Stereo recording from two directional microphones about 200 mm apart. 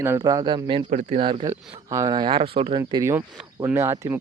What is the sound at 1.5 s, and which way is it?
Speech, 15° right (ahead or behind).